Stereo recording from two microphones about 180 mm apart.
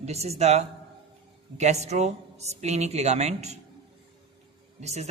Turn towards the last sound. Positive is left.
turn(degrees=-40)  # may be behind; listen again after turning